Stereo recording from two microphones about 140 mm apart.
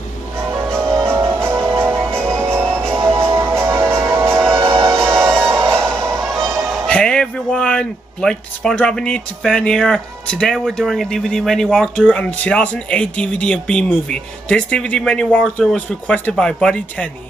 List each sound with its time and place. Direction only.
0.9 s music: 20° right (ahead or behind)
6.2 s music: centre (ahead or behind)
6.7 s speech: 5° left (ahead or behind)